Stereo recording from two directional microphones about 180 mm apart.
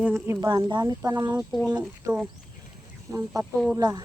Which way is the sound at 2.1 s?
20° right (ahead or behind).